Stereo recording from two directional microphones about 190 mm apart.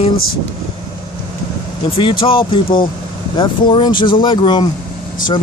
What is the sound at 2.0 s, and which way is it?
Speech, 25° left (ahead or behind).